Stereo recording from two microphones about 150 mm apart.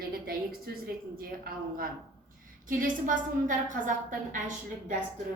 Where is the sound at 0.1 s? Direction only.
80° right.